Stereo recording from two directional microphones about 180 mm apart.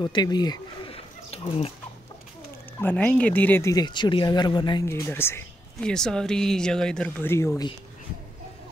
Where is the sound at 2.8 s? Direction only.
10° left (ahead or behind); by 4.8 s 25° left (ahead or behind).